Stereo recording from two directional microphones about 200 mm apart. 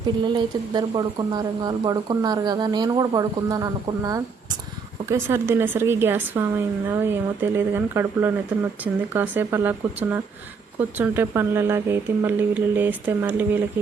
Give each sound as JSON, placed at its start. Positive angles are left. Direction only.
{"t": 0.3, "sound": "speech", "side_deg": -20}